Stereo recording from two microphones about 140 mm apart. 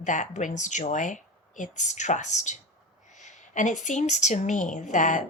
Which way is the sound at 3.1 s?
60° left (ahead or behind).